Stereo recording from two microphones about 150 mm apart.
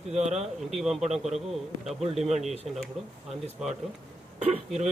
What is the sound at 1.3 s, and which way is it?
Speech, centre (ahead or behind).